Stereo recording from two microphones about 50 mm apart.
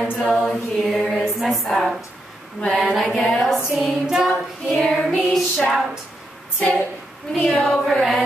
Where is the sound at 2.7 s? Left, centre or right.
Centre.